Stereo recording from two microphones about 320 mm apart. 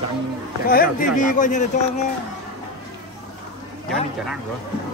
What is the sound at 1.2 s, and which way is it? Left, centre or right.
Speech, left.